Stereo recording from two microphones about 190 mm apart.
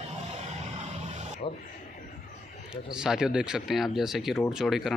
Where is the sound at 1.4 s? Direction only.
30° left (ahead or behind).